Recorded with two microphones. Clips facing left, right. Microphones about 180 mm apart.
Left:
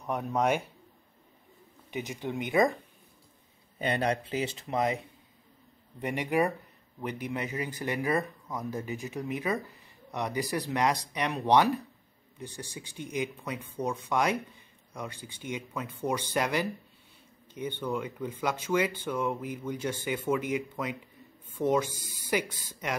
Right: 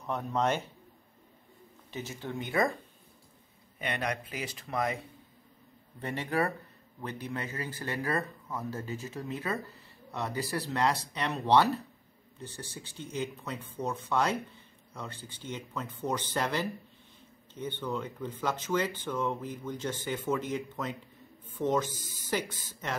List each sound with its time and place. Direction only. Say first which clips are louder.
0.0 s speech: left 2 dB; 10° left (ahead or behind)
1.9 s speech: left 4 dB; 15° left (ahead or behind)
3.8 s speech: left 5 dB; 30° left (ahead or behind); by 22.9 s 10° left (ahead or behind)